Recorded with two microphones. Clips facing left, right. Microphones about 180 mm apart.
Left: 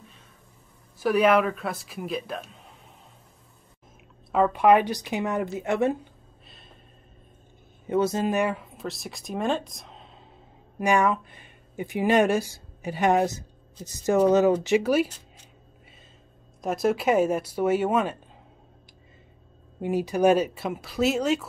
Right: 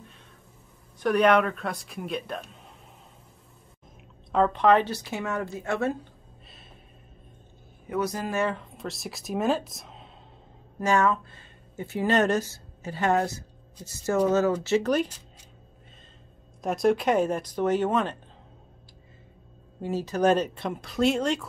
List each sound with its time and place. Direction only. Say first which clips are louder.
0.9 s speech: left 1 dB; 5° left (ahead or behind)
4.3 s speech: left 2 dB; 10° left (ahead or behind)
7.8 s speech: left 5 dB; 25° left (ahead or behind); by 10.0 s centre (ahead or behind)
10.8 s speech: left 1 dB; 15° left (ahead or behind)
16.6 s speech: even; centre (ahead or behind)
19.8 s speech: left 3 dB; 15° left (ahead or behind)